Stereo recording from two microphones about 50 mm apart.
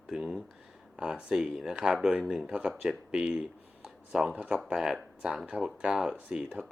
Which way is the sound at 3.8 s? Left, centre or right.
Centre.